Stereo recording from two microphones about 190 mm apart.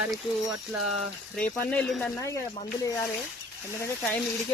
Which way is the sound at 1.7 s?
5° left (ahead or behind).